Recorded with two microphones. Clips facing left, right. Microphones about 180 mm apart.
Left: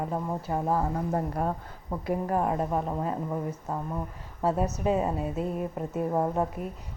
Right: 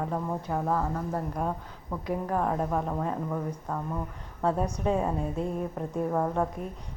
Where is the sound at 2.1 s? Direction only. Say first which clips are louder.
Left 1 dB; 5° left (ahead or behind).